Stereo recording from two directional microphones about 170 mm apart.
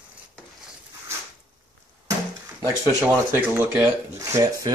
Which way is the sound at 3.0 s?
15° right (ahead or behind).